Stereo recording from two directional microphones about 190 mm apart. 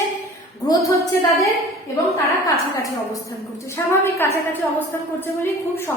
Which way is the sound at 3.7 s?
15° left (ahead or behind).